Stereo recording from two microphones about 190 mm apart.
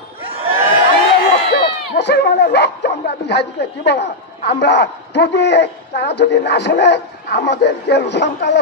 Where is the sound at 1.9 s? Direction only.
65° left (ahead or behind).